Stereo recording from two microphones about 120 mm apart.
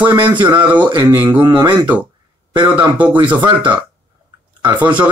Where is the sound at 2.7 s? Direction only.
15° right (ahead or behind).